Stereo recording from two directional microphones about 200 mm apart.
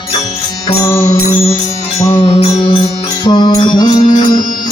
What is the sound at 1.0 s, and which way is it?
Music, 30° left (ahead or behind).